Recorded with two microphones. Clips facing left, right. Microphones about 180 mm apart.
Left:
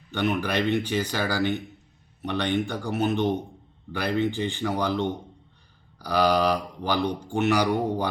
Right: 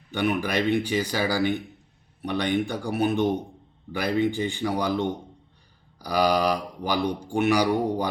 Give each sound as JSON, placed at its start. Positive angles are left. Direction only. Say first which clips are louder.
{"t": 0.1, "sound": "speech", "louder": "right 1 dB", "side_deg": -10}